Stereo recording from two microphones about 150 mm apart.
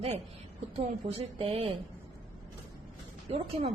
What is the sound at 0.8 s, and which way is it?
Speech, 40° right (ahead or behind).